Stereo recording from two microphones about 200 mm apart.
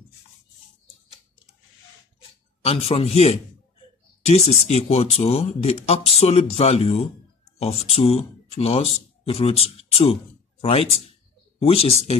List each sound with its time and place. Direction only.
2.6 s speech: 30° left (ahead or behind)